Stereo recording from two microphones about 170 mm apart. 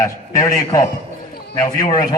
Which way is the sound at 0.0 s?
15° left (ahead or behind).